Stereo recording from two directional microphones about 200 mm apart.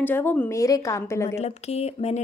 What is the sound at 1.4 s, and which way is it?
Speech, 30° left (ahead or behind).